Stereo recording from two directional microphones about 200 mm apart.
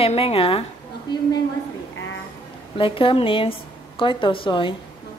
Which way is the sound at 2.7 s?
25° left (ahead or behind).